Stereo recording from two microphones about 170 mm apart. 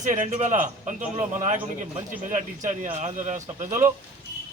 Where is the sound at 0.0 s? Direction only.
45° right (ahead or behind).